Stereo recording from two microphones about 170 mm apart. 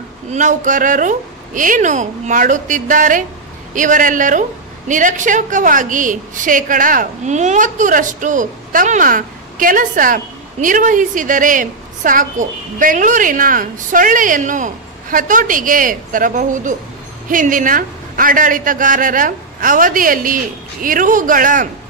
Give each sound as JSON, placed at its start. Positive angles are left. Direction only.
{"t": 0.3, "sound": "a woman's voice", "side_deg": -45}